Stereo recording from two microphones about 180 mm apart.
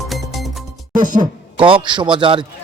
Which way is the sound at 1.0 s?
45° right (ahead or behind).